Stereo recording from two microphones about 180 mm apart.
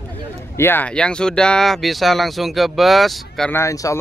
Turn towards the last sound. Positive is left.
turn(degrees=15)  # may be behind; listen again after turning